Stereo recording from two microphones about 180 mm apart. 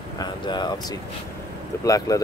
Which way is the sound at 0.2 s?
25° left (ahead or behind).